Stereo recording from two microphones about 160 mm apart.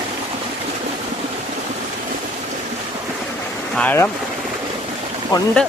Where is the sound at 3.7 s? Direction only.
10° left (ahead or behind).